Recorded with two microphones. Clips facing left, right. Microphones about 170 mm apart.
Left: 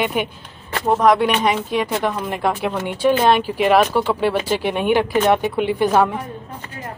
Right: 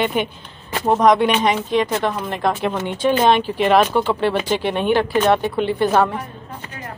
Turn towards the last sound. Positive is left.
turn(degrees=10)  # may be behind; listen again after turning